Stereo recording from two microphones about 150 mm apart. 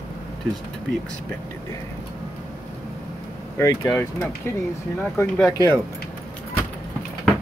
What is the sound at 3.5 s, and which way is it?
Speech, 20° left (ahead or behind).